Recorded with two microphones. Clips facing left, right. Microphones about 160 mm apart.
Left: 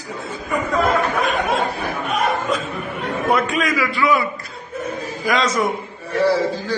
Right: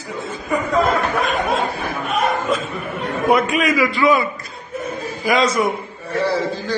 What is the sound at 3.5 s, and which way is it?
Speech, 20° right (ahead or behind).